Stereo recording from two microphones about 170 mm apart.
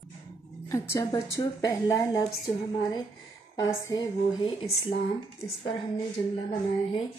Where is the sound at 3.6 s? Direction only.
20° left (ahead or behind).